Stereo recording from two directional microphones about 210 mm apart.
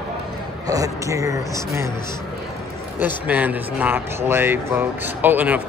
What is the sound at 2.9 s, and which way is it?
Speech, 10° right (ahead or behind).